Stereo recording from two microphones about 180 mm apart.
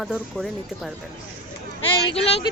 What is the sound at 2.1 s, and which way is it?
Speech, 35° left (ahead or behind).